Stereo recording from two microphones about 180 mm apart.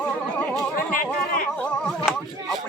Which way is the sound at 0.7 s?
50° left (ahead or behind).